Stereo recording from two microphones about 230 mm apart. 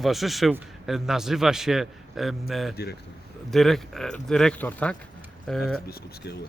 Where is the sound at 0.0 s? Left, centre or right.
Centre.